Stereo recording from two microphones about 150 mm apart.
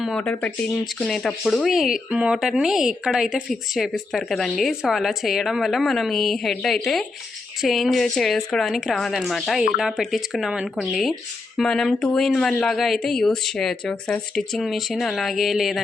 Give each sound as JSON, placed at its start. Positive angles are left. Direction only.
{"t": 0.2, "sound": "speech", "side_deg": 10}